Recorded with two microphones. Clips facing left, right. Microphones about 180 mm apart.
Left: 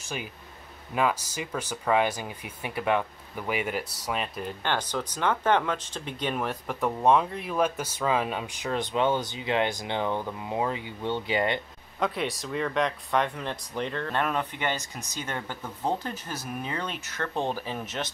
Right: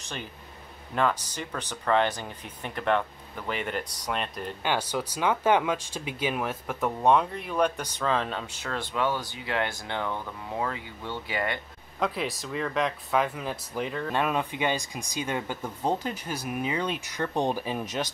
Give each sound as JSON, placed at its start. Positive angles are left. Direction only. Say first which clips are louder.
{"t": 0.0, "sound": "speech", "louder": "left 2 dB", "side_deg": 10}
{"t": 4.6, "sound": "speech", "louder": "right 2 dB", "side_deg": -10}
{"t": 12.0, "sound": "speech", "louder": "left 1 dB", "side_deg": 0}